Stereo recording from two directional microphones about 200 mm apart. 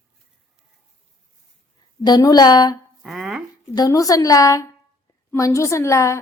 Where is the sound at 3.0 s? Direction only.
Centre (ahead or behind).